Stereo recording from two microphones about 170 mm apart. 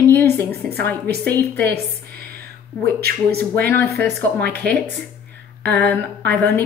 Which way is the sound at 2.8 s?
70° right (ahead or behind).